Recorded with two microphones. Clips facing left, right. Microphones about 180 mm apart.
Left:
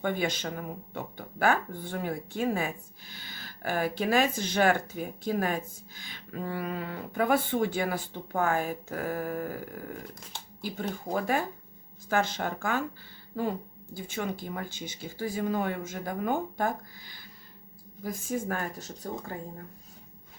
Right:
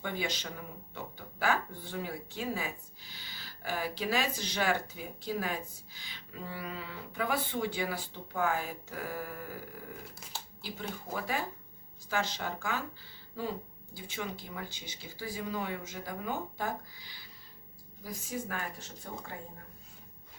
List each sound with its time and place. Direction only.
0.0 s speech: 50° left (ahead or behind)
10.6 s speech: 50° left (ahead or behind)